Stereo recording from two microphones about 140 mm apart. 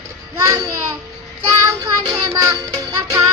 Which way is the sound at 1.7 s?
25° right (ahead or behind).